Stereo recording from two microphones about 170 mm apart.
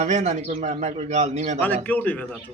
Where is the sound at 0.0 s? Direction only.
40° right (ahead or behind).